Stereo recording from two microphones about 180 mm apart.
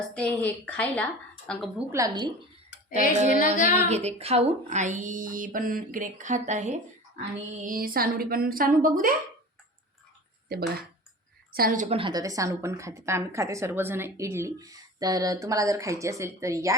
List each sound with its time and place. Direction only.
0.1 s a woman's voice: 5° left (ahead or behind)
1.9 s a woman's voice: 20° right (ahead or behind)
3.0 s a sound: 45° left (ahead or behind)
3.8 s speech: 35° right (ahead or behind)
11.5 s speech: 50° right (ahead or behind)
11.9 s a woman's voice: 30° right (ahead or behind)